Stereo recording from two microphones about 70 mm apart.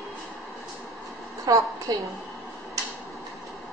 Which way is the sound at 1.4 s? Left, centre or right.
Right.